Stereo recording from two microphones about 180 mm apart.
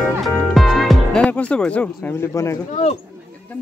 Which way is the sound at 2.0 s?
10° left (ahead or behind).